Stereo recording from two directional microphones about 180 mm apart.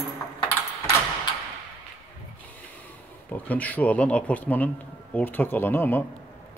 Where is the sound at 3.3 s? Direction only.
10° left (ahead or behind).